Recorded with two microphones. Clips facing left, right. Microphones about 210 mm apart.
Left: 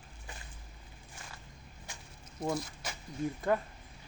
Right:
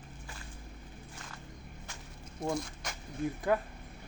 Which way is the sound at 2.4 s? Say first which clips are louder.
Even; 5° left (ahead or behind).